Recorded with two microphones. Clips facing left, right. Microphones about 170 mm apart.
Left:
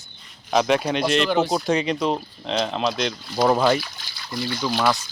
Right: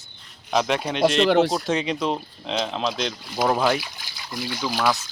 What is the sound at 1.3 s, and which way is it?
Speech, 75° right (ahead or behind).